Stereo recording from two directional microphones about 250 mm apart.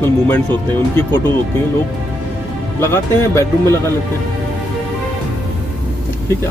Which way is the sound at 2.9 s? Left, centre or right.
Centre.